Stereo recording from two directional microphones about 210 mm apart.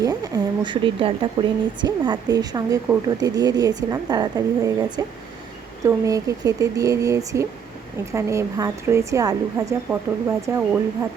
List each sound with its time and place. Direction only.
0.0 s a woman's voice: 15° right (ahead or behind)